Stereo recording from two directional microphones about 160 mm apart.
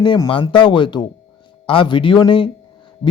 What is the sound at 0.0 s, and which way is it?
Speech, 30° left (ahead or behind).